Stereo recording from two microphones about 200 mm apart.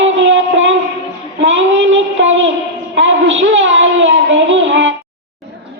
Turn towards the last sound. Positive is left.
turn(degrees=-65)  # may be behind; listen again after turning